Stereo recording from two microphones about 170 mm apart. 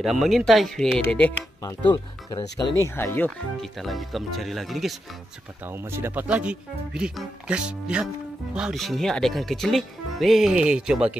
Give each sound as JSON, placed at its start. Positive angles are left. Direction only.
{"t": 0.0, "sound": "speech", "side_deg": 0}
{"t": 2.8, "sound": "speech", "side_deg": 15}
{"t": 3.8, "sound": "speech", "side_deg": 0}
{"t": 5.7, "sound": "speech", "side_deg": -15}